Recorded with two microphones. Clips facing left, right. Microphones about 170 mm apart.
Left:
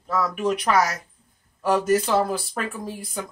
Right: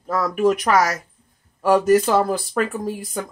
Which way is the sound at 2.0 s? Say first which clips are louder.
Right 3 dB; 45° right (ahead or behind).